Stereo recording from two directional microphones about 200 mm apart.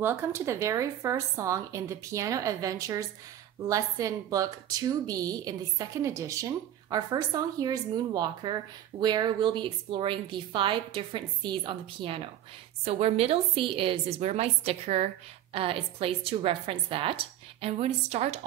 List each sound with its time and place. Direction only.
0.0 s a woman's voice: 10° right (ahead or behind); by 18.4 s 30° right (ahead or behind)